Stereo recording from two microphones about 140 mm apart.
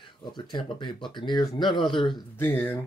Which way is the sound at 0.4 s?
35° left (ahead or behind).